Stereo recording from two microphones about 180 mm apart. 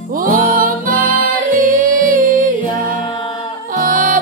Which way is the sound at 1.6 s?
50° right (ahead or behind).